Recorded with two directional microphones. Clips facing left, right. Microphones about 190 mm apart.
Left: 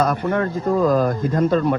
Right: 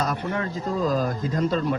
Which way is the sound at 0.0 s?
55° left (ahead or behind).